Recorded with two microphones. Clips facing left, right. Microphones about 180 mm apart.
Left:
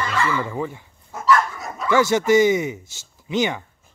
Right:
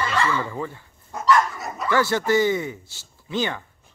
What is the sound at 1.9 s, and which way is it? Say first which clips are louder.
Speech: left 4 dB; 20° left (ahead or behind).